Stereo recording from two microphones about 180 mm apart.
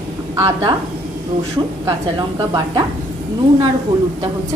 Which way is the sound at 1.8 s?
20° right (ahead or behind).